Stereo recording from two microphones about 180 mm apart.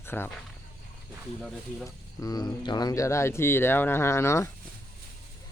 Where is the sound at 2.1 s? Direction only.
20° left (ahead or behind).